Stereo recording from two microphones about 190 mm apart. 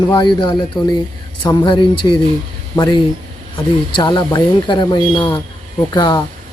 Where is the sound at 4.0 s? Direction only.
25° left (ahead or behind).